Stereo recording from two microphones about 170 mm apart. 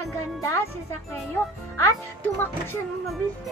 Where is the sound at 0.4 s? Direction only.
15° left (ahead or behind).